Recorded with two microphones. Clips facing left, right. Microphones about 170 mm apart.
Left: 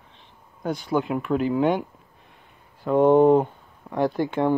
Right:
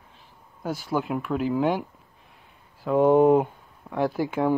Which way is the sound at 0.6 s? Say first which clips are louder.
Left 3 dB; 5° right (ahead or behind).